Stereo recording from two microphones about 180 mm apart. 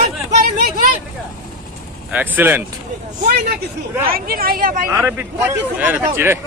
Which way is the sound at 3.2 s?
60° right (ahead or behind).